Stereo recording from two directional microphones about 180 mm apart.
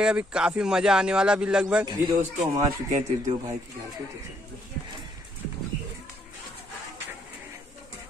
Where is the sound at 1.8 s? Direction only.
25° right (ahead or behind).